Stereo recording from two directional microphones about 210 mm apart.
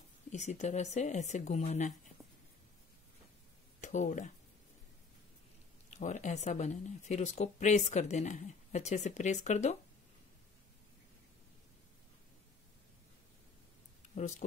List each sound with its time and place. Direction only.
0.3 s speech: 35° left (ahead or behind)
3.8 s speech: 35° left (ahead or behind)
5.9 s speech: 35° left (ahead or behind)
14.1 s a sound: 35° left (ahead or behind)